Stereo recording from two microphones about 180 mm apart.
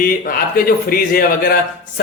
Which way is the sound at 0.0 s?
55° left (ahead or behind).